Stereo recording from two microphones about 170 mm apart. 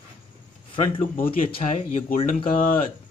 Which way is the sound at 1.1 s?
55° left (ahead or behind).